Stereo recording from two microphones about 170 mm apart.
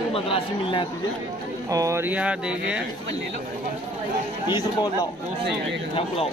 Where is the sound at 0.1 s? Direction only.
30° left (ahead or behind).